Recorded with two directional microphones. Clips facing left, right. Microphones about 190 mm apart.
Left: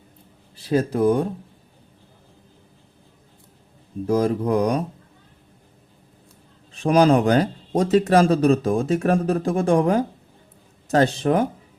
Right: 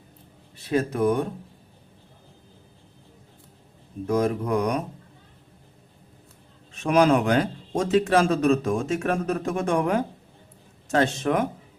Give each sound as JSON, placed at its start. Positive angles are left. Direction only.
{"t": 0.5, "sound": "a man's voice", "side_deg": 30}
{"t": 4.0, "sound": "a man's voice", "side_deg": 30}
{"t": 6.7, "sound": "a man's voice", "side_deg": 35}